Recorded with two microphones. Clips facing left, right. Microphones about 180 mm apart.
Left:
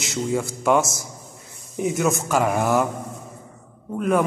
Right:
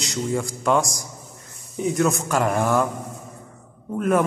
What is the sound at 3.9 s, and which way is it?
Speech, centre (ahead or behind).